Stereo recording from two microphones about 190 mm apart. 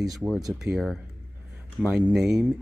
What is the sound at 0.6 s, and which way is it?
Speech, centre (ahead or behind).